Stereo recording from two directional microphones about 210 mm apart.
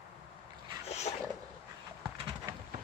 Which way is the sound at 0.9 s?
30° left (ahead or behind).